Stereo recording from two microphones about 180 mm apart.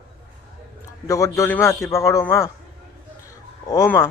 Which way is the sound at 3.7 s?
20° left (ahead or behind).